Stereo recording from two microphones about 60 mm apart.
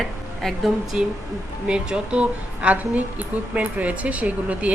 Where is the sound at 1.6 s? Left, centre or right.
Centre.